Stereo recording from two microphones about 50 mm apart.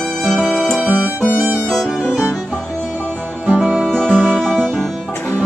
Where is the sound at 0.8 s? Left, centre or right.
Right.